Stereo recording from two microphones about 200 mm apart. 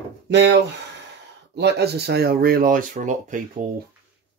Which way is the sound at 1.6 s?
55° right (ahead or behind).